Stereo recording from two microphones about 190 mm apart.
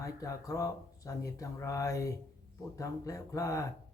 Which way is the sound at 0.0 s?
15° left (ahead or behind).